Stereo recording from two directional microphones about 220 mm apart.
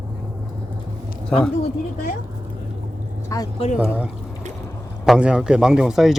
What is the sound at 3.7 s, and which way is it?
Speech, 5° right (ahead or behind).